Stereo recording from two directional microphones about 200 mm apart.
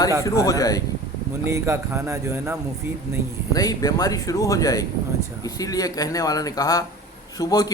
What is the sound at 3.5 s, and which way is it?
Speech, 20° left (ahead or behind).